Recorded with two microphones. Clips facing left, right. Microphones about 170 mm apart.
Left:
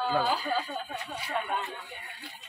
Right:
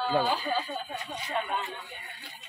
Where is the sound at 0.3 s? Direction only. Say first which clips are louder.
Even; 15° right (ahead or behind).